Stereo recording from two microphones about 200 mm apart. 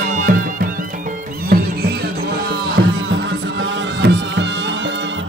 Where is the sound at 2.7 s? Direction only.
65° right (ahead or behind).